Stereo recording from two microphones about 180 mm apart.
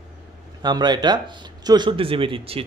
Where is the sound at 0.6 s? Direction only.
25° right (ahead or behind).